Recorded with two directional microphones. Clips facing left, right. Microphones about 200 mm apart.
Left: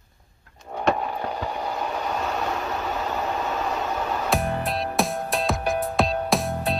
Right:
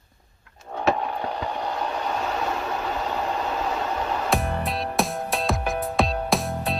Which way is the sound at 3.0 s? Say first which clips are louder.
Even; 5° left (ahead or behind).